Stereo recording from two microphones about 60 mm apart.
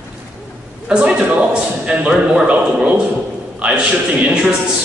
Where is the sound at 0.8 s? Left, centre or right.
Centre.